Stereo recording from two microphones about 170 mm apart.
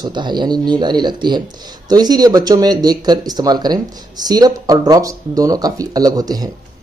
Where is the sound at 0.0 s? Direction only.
25° right (ahead or behind).